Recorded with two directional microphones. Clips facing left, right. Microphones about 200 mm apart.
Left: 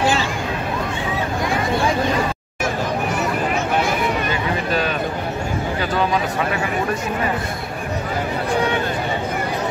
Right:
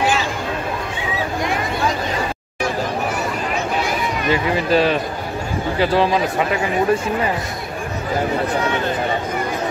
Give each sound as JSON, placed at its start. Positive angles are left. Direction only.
{"t": 4.6, "sound": "speech", "side_deg": -30}